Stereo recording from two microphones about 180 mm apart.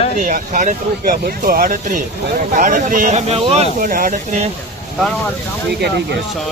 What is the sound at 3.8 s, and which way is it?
Speech, 50° right (ahead or behind).